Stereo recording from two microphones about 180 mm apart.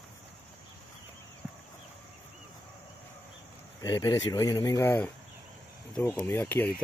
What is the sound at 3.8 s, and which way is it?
Speech, 20° left (ahead or behind).